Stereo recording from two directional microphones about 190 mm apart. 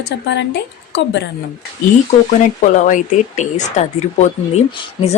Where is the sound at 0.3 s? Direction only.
65° left (ahead or behind).